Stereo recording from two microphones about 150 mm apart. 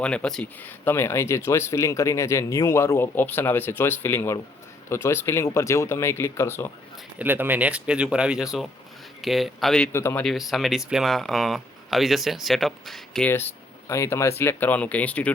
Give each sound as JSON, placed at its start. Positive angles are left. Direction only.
{"t": 0.0, "sound": "speech", "side_deg": 5}
{"t": 7.2, "sound": "speech", "side_deg": -10}
{"t": 9.9, "sound": "speech", "side_deg": 15}
{"t": 10.2, "sound": "speech", "side_deg": 0}
{"t": 13.3, "sound": "speech", "side_deg": 15}